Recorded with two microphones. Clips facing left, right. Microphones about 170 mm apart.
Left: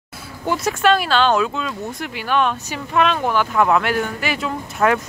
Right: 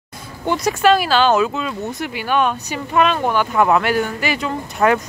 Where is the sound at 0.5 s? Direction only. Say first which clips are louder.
Right 2 dB; centre (ahead or behind).